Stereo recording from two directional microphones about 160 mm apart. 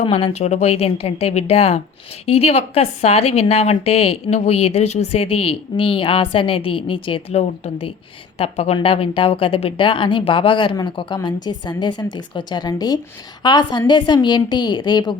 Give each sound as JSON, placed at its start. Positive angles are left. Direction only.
{"t": 0.0, "sound": "a woman's voice", "side_deg": 40}